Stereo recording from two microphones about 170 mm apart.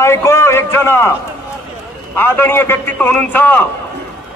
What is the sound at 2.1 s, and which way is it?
A man's voice, 15° left (ahead or behind).